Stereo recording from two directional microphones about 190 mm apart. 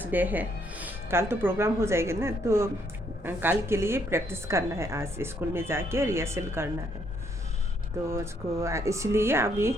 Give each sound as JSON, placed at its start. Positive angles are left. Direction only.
{"t": 0.0, "sound": "a woman's voice", "side_deg": -10}
{"t": 8.1, "sound": "a woman's voice", "side_deg": -15}